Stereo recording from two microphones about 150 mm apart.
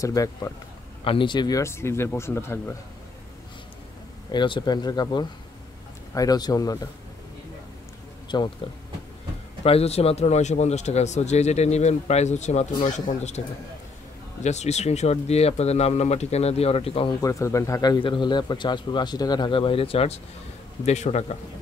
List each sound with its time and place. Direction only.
0.0 s a man's voice: 20° left (ahead or behind)
1.0 s speech: 35° left (ahead or behind)
1.6 s speech: 15° left (ahead or behind)
4.3 s a man's voice: 30° left (ahead or behind)
8.3 s a man's voice: 30° left (ahead or behind)
9.6 s a man's voice: 40° left (ahead or behind)
14.4 s a man's voice: 50° left (ahead or behind)
17.2 s a man's voice: 20° left (ahead or behind); by 21.4 s 50° left (ahead or behind)